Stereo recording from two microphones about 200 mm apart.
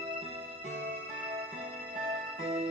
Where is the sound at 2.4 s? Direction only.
30° right (ahead or behind).